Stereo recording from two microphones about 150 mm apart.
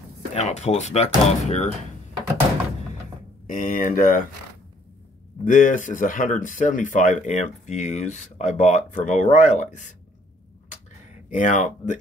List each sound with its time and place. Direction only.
0.3 s speech: 45° left (ahead or behind)
3.4 s speech: 65° left (ahead or behind)
5.4 s speech: 60° left (ahead or behind)
11.2 s speech: 55° left (ahead or behind)